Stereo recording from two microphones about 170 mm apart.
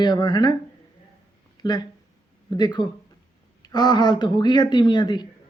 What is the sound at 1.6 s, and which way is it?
Speech, 25° left (ahead or behind).